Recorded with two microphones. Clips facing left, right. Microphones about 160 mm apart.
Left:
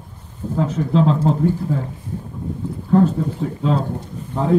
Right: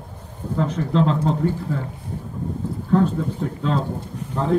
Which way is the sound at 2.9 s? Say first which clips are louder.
Left 3 dB; 5° left (ahead or behind).